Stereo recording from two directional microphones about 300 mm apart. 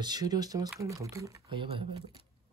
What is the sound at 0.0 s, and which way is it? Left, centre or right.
Music, centre.